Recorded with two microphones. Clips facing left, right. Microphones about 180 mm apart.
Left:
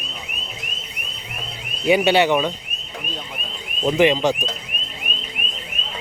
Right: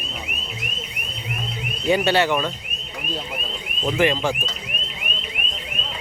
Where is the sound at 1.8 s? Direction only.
15° left (ahead or behind).